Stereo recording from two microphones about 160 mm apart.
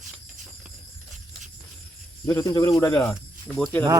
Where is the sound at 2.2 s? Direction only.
20° left (ahead or behind).